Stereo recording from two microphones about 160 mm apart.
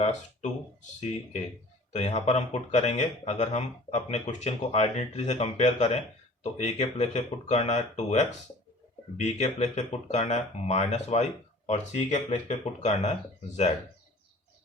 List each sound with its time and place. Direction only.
0.9 s a man's voice: 45° left (ahead or behind)